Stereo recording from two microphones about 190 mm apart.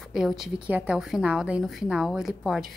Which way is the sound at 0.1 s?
Centre (ahead or behind).